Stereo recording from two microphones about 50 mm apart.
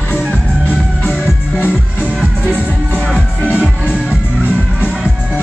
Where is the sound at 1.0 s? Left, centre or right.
Left.